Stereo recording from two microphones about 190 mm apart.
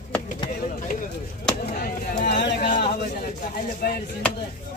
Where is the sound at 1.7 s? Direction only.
45° left (ahead or behind).